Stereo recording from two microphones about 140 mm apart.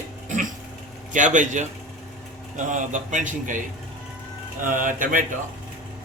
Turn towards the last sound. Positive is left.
turn(degrees=-75)  # may be behind; listen again after turning